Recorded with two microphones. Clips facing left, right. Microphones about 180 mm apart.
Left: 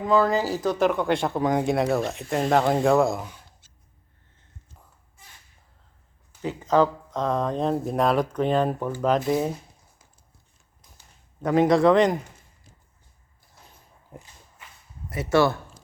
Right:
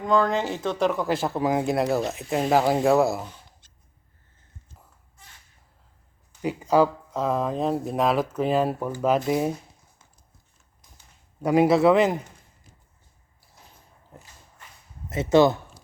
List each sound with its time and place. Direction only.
0.0 s speech: 5° left (ahead or behind)
3.6 s dog: 10° left (ahead or behind)
6.4 s speech: 10° right (ahead or behind)
11.4 s speech: 10° right (ahead or behind)
14.1 s dog: 15° left (ahead or behind)
15.1 s speech: 20° right (ahead or behind)